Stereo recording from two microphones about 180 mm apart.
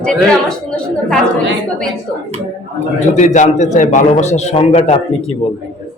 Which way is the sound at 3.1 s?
45° left (ahead or behind).